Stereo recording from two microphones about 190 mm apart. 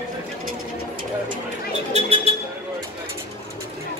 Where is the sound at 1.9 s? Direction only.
30° right (ahead or behind).